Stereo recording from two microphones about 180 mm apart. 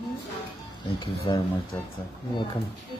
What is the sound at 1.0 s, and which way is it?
Speech, 25° left (ahead or behind).